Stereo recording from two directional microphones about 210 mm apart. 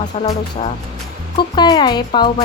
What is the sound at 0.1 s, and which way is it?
Speech, 30° left (ahead or behind).